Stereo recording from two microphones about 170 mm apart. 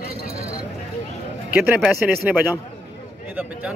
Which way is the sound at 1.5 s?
10° right (ahead or behind).